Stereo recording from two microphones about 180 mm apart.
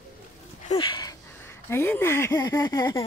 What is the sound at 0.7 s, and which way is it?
Speech, 25° left (ahead or behind).